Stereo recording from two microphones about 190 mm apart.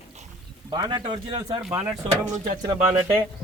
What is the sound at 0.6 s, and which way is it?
Speech, 20° right (ahead or behind).